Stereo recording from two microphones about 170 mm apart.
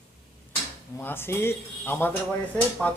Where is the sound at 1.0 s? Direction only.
10° left (ahead or behind).